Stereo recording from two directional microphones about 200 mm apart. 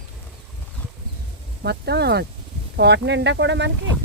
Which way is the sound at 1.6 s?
55° right (ahead or behind).